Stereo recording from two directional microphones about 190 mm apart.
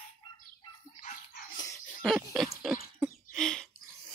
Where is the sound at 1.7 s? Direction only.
Centre (ahead or behind).